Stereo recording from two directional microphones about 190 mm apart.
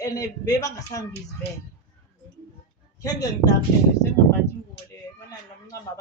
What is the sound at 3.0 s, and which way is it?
Speech, 20° left (ahead or behind).